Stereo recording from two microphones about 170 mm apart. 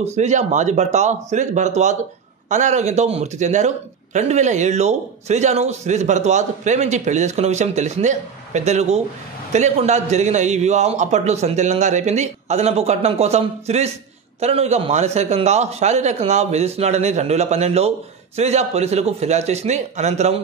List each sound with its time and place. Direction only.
0.0 s a man's voice: 40° right (ahead or behind)